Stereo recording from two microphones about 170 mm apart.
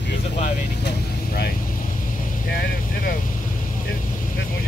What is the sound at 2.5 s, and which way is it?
Vehicle, 55° left (ahead or behind).